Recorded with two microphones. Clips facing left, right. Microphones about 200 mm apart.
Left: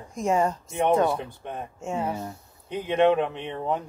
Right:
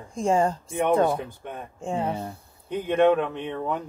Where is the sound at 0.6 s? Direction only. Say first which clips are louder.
Even; 55° right (ahead or behind).